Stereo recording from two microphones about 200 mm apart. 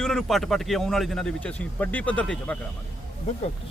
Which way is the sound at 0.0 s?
Centre (ahead or behind).